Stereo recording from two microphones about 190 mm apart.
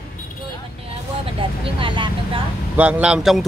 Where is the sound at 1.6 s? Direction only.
25° right (ahead or behind).